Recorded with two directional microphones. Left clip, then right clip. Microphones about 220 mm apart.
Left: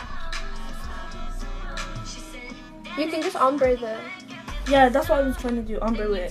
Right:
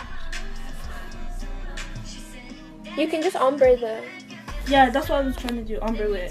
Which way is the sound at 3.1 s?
15° right (ahead or behind).